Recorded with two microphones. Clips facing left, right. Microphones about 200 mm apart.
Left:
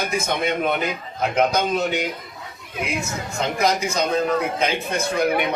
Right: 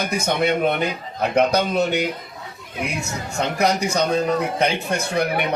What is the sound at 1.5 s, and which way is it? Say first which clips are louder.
Speech: right 2 dB; 65° right (ahead or behind).